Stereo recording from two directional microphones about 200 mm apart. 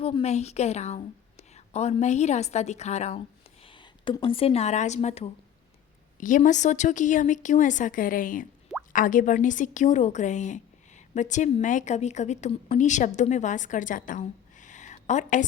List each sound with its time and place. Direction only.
0.0 s a woman's voice: 30° left (ahead or behind)
6.1 s a woman's voice: 40° left (ahead or behind)